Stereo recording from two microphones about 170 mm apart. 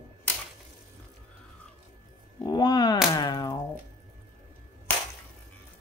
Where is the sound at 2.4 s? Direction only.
25° left (ahead or behind).